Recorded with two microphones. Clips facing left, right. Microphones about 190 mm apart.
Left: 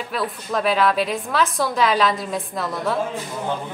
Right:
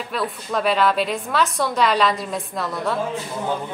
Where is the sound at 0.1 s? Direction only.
Centre (ahead or behind).